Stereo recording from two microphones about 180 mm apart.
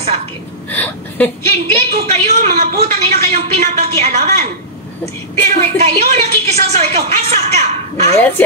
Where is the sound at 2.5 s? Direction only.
60° right (ahead or behind).